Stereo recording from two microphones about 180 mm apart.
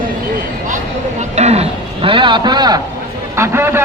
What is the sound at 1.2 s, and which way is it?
A man's voice, 40° right (ahead or behind).